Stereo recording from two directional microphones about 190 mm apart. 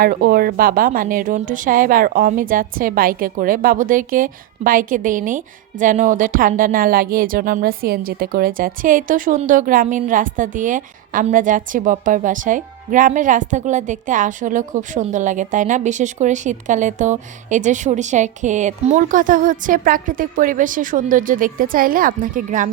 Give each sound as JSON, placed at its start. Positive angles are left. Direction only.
{"t": 0.0, "sound": "a woman's voice", "side_deg": -50}